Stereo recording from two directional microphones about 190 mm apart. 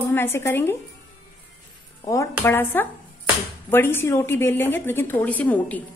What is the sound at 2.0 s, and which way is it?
A woman's voice, 15° left (ahead or behind).